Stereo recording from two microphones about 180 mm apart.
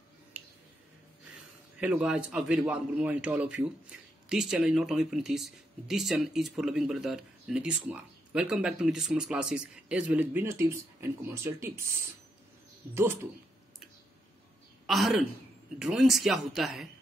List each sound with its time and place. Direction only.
0.3 s a sound: 10° right (ahead or behind)
1.8 s speech: 5° right (ahead or behind)
12.9 s speech: 15° right (ahead or behind)
14.9 s speech: centre (ahead or behind)